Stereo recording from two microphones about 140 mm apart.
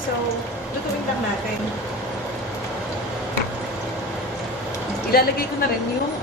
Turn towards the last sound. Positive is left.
turn(degrees=90)